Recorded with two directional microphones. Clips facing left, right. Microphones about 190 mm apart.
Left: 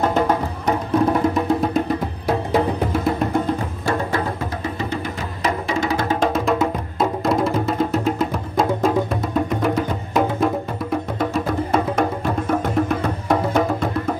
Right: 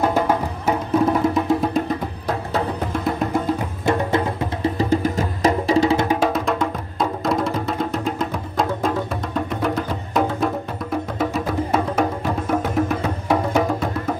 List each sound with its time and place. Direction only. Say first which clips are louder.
0.0 s music: even; 10° right (ahead or behind)
4.7 s music: right 6 dB; 40° right (ahead or behind)
6.1 s music: left 1 dB; 5° right (ahead or behind)